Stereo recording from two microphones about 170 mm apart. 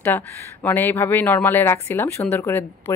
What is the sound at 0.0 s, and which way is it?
Speech, 10° left (ahead or behind).